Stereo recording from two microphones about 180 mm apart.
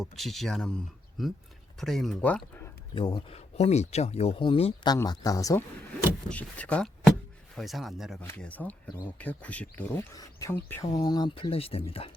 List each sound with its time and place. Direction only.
0.0 s speech: centre (ahead or behind)
2.9 s speech: 25° left (ahead or behind)
4.9 s speech: 20° left (ahead or behind)
6.2 s speech: 5° left (ahead or behind)
8.2 s speech: 10° left (ahead or behind); by 12.1 s 30° left (ahead or behind)